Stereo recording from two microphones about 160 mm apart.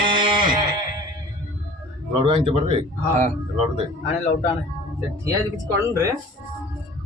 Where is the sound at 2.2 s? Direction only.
35° right (ahead or behind).